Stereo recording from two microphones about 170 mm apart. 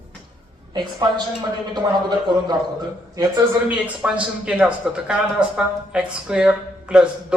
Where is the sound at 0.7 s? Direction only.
25° right (ahead or behind).